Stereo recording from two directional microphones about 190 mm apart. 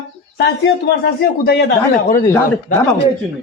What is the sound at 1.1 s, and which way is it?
Speech, 60° left (ahead or behind).